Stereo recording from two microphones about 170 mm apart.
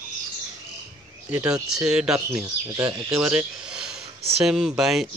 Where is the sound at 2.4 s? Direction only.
20° right (ahead or behind).